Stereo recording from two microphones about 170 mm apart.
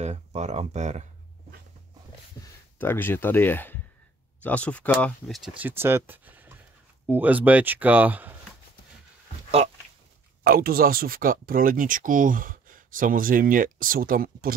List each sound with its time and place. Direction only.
0.0 s speech: 40° right (ahead or behind)
2.4 s speech: 10° left (ahead or behind); by 8.4 s 10° right (ahead or behind)
10.4 s speech: 60° right (ahead or behind)